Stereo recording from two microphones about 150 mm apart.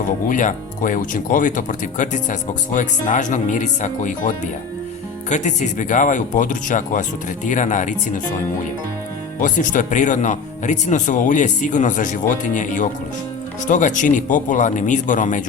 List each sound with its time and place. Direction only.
0.3 s speech: 60° left (ahead or behind)
9.4 s speech: 60° left (ahead or behind)